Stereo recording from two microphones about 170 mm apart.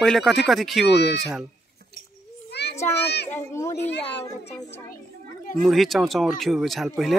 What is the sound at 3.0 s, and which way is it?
Speech, 80° left.